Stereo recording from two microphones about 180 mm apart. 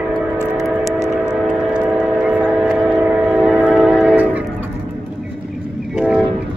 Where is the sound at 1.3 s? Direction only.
5° right (ahead or behind).